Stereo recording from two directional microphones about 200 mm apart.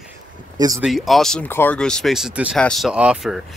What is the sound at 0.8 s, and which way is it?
Speech, centre (ahead or behind).